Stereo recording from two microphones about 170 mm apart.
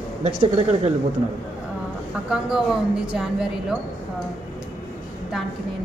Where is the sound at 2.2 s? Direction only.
5° right (ahead or behind).